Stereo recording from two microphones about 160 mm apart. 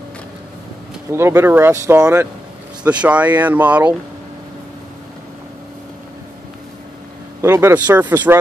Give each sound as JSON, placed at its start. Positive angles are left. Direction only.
{"t": 1.1, "sound": "speech", "side_deg": -15}
{"t": 7.4, "sound": "speech", "side_deg": -15}